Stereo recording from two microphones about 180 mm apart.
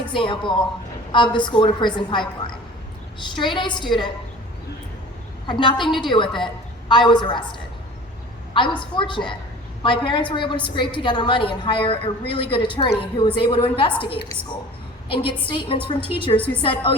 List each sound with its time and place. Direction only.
0.1 s a woman's voice: 25° left (ahead or behind)
5.5 s a woman's voice: 25° left (ahead or behind)
8.5 s a woman's voice: 25° left (ahead or behind)
15.1 s a woman's voice: 30° left (ahead or behind)